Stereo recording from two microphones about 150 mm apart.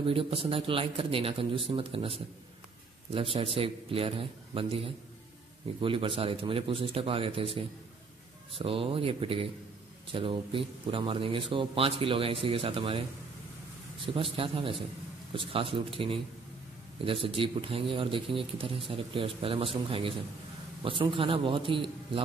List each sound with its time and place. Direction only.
0.0 s speech: 35° right (ahead or behind)
14.0 s speech: 35° right (ahead or behind)